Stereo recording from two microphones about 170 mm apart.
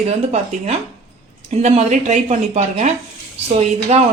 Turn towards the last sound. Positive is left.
turn(degrees=-40)  # may be behind; listen again after turning